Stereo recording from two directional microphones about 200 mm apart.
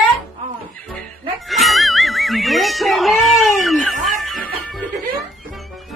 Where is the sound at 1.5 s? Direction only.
Centre (ahead or behind).